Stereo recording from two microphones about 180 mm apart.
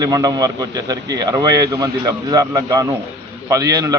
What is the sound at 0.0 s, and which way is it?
A man's voice, 20° right (ahead or behind).